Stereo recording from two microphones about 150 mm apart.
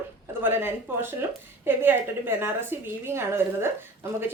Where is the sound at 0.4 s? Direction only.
15° right (ahead or behind).